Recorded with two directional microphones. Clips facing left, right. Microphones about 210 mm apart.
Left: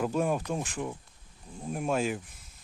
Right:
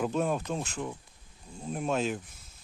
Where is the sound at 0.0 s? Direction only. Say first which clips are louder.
Left 1 dB; 10° left (ahead or behind).